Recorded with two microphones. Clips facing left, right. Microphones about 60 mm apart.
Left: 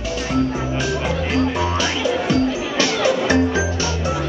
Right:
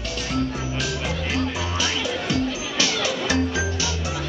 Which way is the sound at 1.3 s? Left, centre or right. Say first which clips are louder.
Left 7 dB; centre.